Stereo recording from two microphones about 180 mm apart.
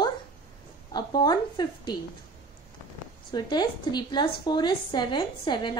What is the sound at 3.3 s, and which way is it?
A woman's voice, 25° left (ahead or behind).